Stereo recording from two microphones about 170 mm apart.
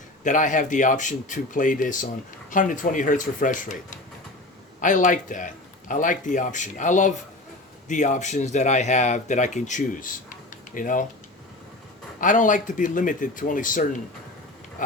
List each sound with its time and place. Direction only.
0.3 s speech: 50° left (ahead or behind)
12.2 s speech: 50° left (ahead or behind)